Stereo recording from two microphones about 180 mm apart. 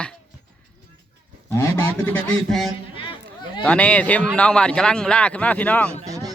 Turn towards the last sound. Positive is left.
turn(degrees=-20)  # may be behind; listen again after turning